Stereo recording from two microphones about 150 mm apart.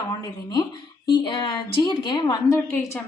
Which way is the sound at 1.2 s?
30° left (ahead or behind).